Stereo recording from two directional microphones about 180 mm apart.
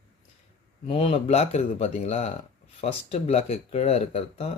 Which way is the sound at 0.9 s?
35° left (ahead or behind).